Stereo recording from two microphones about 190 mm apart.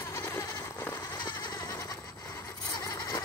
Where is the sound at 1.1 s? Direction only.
25° left (ahead or behind).